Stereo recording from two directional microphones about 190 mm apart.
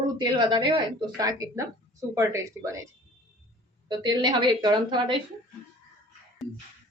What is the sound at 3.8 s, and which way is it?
A woman's voice, 25° right (ahead or behind).